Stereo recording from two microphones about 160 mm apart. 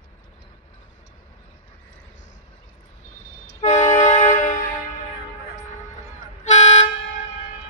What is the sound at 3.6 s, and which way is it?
Train, 50° left (ahead or behind).